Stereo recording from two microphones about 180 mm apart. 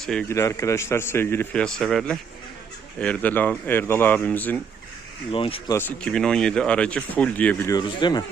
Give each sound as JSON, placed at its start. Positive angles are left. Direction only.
{"t": 0.0, "sound": "speech", "side_deg": 5}
{"t": 0.3, "sound": "speech", "side_deg": 15}
{"t": 5.3, "sound": "speech", "side_deg": 30}
{"t": 5.7, "sound": "speech", "side_deg": 5}
{"t": 7.7, "sound": "speech", "side_deg": 25}